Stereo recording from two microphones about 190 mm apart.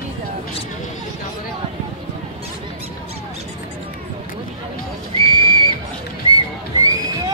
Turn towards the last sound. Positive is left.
turn(degrees=-20)  # may be behind; listen again after turning